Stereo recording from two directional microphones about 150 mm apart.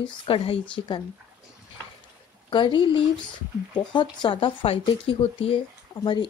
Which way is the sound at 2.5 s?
30° left (ahead or behind).